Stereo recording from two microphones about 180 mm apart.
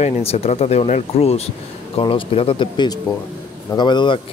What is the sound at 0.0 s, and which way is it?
Speech, 35° left (ahead or behind).